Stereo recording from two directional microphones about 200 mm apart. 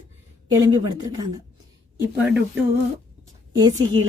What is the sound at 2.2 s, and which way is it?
Speech, 10° right (ahead or behind).